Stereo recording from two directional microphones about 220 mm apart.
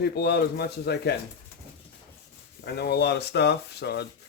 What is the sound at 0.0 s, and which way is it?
Speech, 50° left (ahead or behind).